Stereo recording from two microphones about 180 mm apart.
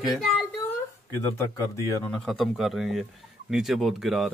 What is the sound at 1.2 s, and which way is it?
Speech, 15° left (ahead or behind).